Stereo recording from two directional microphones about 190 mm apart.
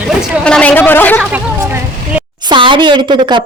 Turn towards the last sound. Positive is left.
turn(degrees=-25)  # may be behind; listen again after turning